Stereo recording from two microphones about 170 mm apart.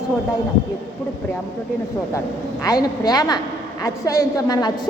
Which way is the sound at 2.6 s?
20° left (ahead or behind).